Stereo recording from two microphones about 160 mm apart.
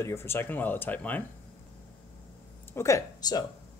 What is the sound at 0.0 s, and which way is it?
Speech, 15° left (ahead or behind).